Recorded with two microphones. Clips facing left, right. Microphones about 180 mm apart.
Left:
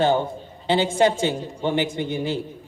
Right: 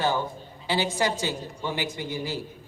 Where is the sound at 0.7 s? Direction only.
25° left (ahead or behind).